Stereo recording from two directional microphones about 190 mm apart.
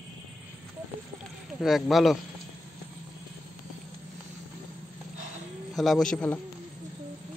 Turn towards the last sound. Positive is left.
turn(degrees=5)  # may be behind; listen again after turning